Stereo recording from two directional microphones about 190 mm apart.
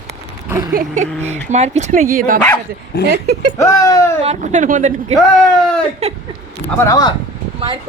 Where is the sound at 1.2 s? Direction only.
35° right (ahead or behind).